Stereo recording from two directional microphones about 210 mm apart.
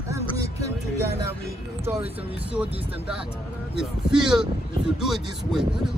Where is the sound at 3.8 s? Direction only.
5° right (ahead or behind).